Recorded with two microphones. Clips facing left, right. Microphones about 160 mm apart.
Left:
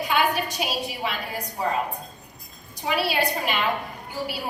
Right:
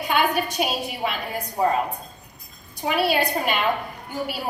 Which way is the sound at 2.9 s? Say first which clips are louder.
Right 3 dB; 50° right (ahead or behind).